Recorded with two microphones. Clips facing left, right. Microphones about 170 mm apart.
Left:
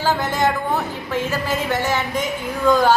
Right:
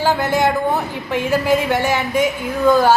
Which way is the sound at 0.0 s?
10° right (ahead or behind).